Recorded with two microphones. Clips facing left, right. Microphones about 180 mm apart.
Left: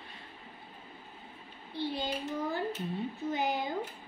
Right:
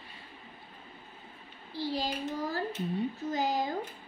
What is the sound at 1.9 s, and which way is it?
Child singing, 90° right.